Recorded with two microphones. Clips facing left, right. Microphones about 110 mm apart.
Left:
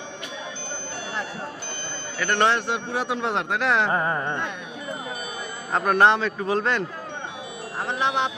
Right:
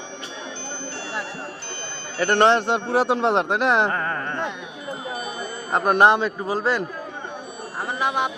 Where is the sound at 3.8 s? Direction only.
15° left (ahead or behind).